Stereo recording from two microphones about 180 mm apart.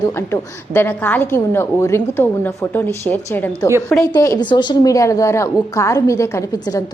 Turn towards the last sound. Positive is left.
turn(degrees=20)  # may be behind; listen again after turning